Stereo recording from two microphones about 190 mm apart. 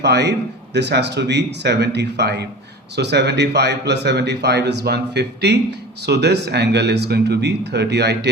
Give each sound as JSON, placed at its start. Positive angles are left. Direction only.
{"t": 0.0, "sound": "a man's voice", "side_deg": -65}